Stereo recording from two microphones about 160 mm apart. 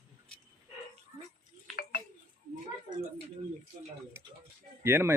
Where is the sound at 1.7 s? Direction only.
Centre (ahead or behind).